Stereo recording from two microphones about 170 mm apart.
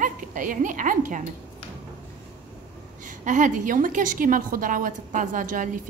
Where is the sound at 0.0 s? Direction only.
50° right (ahead or behind).